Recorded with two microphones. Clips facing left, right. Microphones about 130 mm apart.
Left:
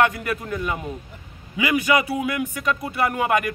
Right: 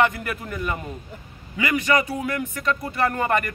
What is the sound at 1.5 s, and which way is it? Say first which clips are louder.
Speech: left 1 dB; 15° left (ahead or behind).